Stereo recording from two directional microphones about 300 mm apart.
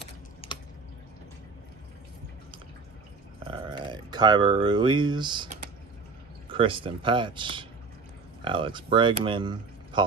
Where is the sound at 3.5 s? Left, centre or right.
Centre.